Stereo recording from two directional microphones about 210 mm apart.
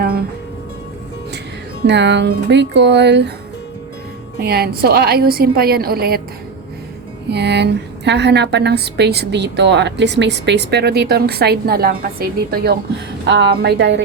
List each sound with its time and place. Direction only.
1.9 s speech: 55° right (ahead or behind)
4.4 s a woman's voice: 50° right (ahead or behind)
7.3 s a woman's voice: 55° right (ahead or behind)